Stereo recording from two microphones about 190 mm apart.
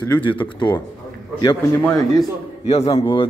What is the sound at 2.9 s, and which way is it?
Speech, 25° left (ahead or behind).